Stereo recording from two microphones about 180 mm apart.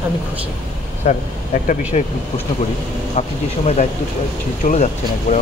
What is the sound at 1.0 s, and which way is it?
Speech, 40° left (ahead or behind).